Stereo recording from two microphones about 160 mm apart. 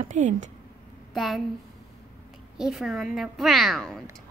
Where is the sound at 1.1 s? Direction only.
Centre (ahead or behind).